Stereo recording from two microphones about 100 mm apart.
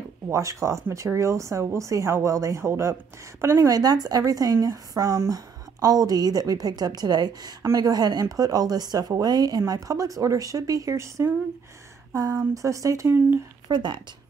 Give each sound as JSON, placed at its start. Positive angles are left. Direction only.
{"t": 0.3, "sound": "speech", "side_deg": -30}
{"t": 12.5, "sound": "speech", "side_deg": -35}
{"t": 13.7, "sound": "a woman's voice", "side_deg": -50}